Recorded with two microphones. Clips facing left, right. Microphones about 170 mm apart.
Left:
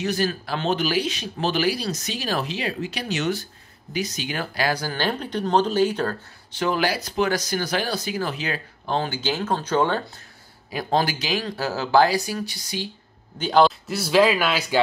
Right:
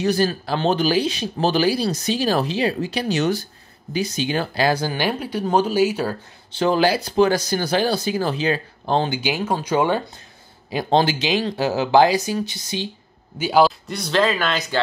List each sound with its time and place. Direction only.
0.0 s speech: 35° right (ahead or behind)
4.9 s speech: 10° right (ahead or behind)
6.5 s speech: 30° right (ahead or behind)
9.1 s speech: 10° right (ahead or behind)
10.7 s speech: 25° right (ahead or behind)
13.4 s speech: 5° right (ahead or behind)